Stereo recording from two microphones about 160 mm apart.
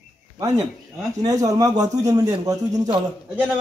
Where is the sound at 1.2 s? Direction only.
20° right (ahead or behind).